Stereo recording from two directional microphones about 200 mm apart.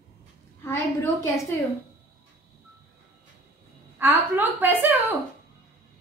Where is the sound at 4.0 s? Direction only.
10° right (ahead or behind).